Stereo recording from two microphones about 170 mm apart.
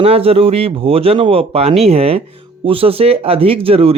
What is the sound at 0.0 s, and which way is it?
Speech, 35° right (ahead or behind).